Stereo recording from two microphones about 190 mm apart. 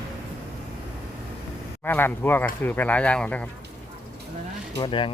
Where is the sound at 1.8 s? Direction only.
10° left (ahead or behind).